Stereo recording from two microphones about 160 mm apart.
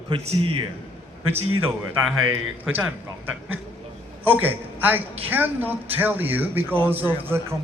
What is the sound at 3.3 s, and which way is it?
A man's voice, 10° right (ahead or behind).